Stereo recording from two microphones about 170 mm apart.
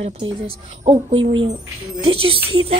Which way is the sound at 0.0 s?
40° right (ahead or behind).